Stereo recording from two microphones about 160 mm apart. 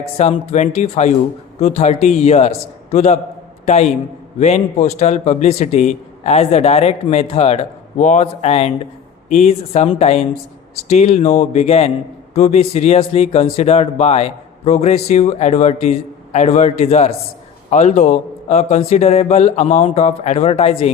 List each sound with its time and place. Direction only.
0.2 s a man's voice: 40° left (ahead or behind)
4.4 s a man's voice: 45° left (ahead or behind)